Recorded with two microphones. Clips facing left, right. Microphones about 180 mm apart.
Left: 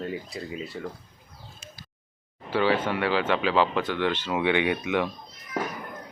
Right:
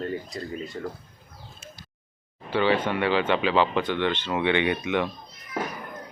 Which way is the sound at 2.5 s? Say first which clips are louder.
Right 1 dB; 5° left (ahead or behind).